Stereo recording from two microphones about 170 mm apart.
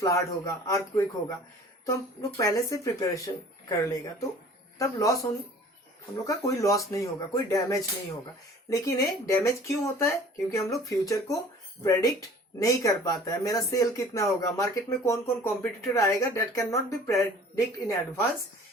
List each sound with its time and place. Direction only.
0.0 s speech: 20° left (ahead or behind)
2.4 s speech: 20° left (ahead or behind)
6.2 s speech: 20° left (ahead or behind)